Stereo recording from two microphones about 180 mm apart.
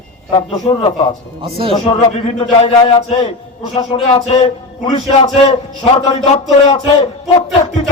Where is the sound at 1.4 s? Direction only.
30° right (ahead or behind).